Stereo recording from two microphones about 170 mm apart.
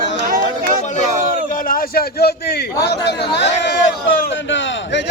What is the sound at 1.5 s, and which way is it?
A man's voice, 55° left (ahead or behind).